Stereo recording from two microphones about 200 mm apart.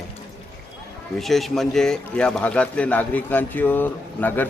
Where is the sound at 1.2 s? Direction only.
Centre (ahead or behind).